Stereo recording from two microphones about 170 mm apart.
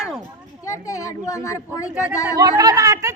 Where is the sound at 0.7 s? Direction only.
20° left (ahead or behind).